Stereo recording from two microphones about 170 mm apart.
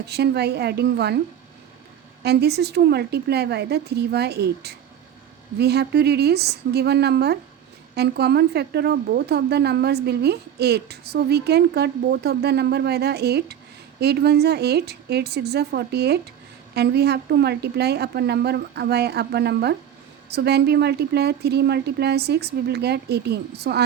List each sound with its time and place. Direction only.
0.0 s speech: 75° right (ahead or behind)
2.2 s speech: 70° right (ahead or behind)